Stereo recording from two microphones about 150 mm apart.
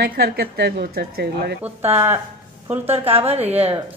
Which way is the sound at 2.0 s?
15° right (ahead or behind).